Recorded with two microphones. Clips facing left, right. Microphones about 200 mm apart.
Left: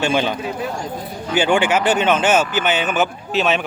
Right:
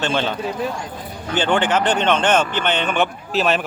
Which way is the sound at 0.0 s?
10° left (ahead or behind).